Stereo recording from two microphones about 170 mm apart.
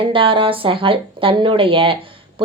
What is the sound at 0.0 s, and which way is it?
Speech, 30° right (ahead or behind).